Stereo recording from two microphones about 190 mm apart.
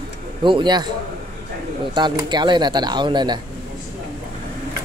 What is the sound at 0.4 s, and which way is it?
Speech, 25° right (ahead or behind).